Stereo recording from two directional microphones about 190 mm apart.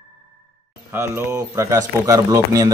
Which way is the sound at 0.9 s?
15° right (ahead or behind).